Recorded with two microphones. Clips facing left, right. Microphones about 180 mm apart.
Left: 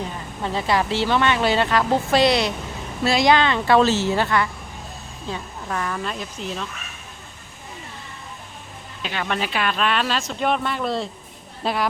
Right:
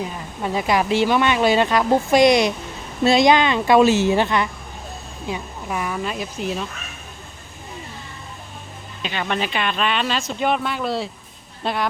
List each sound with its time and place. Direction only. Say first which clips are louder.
0.0 s speech: right 2 dB; 15° right (ahead or behind)
9.0 s speech: right 1 dB; centre (ahead or behind)